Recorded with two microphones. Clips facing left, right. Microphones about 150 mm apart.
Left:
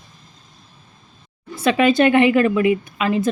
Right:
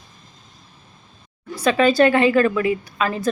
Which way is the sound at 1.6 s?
25° left (ahead or behind).